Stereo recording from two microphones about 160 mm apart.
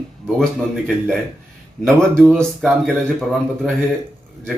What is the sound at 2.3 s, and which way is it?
Speech, centre (ahead or behind).